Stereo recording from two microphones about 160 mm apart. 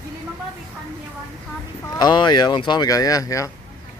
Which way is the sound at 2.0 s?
25° left (ahead or behind).